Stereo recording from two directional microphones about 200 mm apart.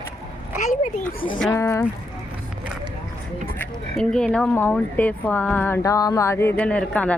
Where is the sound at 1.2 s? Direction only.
45° left (ahead or behind).